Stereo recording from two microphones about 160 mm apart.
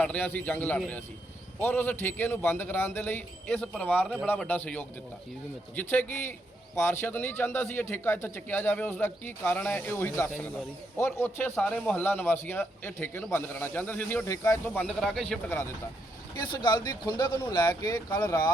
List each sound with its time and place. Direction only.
0.0 s a man's voice: 10° left (ahead or behind)
16.3 s speech: 30° left (ahead or behind)